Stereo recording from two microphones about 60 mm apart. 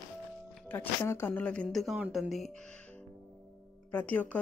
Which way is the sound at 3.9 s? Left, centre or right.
Left.